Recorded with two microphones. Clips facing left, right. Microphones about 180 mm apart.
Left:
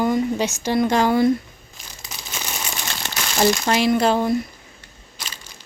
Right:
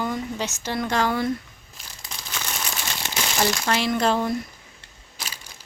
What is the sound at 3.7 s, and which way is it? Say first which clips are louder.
Speech: left 4 dB; 15° left (ahead or behind).